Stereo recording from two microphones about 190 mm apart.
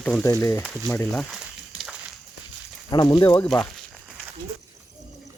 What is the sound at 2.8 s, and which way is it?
Speech, 20° left (ahead or behind).